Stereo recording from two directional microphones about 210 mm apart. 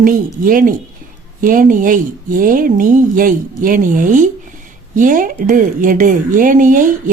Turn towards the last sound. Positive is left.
turn(degrees=-40)  # may be behind; listen again after turning